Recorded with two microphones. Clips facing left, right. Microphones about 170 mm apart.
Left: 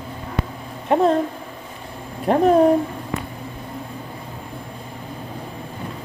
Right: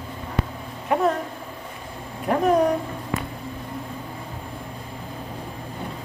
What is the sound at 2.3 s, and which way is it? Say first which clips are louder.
Speech: left 5 dB; 30° left (ahead or behind).